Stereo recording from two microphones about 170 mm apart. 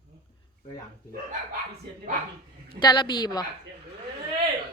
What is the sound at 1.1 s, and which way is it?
Speech, 55° right (ahead or behind).